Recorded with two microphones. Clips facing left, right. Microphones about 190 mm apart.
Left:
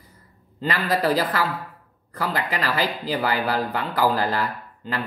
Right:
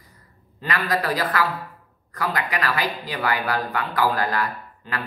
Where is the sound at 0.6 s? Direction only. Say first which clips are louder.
Left 1 dB; 30° left (ahead or behind).